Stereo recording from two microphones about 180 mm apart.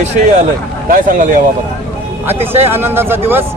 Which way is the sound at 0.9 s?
50° right (ahead or behind).